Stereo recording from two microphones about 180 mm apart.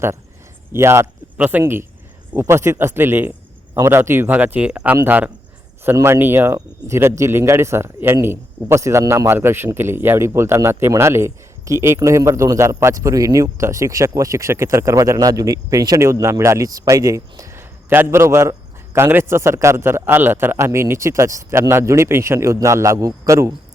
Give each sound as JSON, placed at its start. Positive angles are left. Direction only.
{"t": 0.7, "sound": "speech", "side_deg": -15}